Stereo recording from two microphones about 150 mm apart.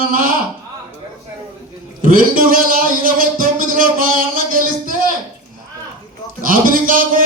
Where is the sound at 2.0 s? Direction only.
70° right (ahead or behind).